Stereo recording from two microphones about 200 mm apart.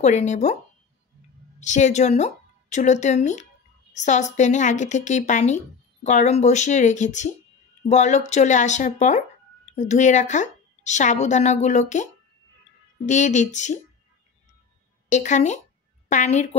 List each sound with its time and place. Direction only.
0.0 s a woman's voice: 35° left (ahead or behind)
1.6 s a woman's voice: 35° left (ahead or behind)
15.0 s a woman's voice: 35° left (ahead or behind)